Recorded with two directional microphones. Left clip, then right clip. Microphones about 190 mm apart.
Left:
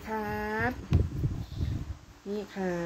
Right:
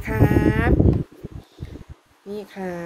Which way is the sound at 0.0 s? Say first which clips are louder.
Right 12 dB; 15° right (ahead or behind).